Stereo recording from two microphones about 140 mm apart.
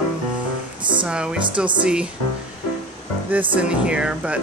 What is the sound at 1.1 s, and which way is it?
Speech, 5° right (ahead or behind).